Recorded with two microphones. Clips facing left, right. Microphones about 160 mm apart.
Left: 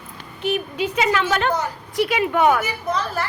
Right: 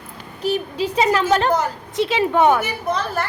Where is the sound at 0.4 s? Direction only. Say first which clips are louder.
Right 1 dB; 35° right (ahead or behind).